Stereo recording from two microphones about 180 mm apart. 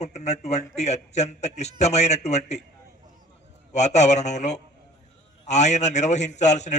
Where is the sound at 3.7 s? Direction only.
40° left (ahead or behind).